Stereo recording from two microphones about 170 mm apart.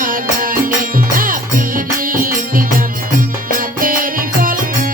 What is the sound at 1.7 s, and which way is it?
Music, 55° right (ahead or behind).